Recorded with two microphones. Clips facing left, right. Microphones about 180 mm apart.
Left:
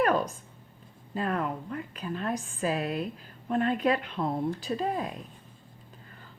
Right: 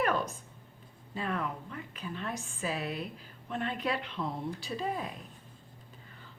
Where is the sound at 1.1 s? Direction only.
45° left (ahead or behind).